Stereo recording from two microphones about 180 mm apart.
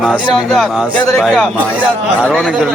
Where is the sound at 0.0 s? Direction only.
Centre (ahead or behind).